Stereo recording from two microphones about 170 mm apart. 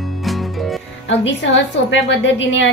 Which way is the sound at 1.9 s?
90° left.